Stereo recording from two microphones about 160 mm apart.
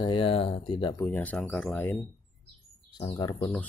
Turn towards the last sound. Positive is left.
turn(degrees=25)  # may be behind; listen again after turning